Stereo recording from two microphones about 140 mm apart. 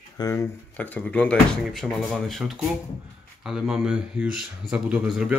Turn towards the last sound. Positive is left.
turn(degrees=-5)  # may be behind; listen again after turning